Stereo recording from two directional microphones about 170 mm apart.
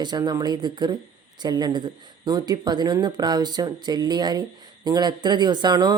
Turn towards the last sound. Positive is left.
turn(degrees=-25)  # may be behind; listen again after turning